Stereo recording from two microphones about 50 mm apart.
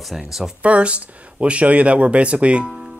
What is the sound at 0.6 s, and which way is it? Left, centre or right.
Speech, right.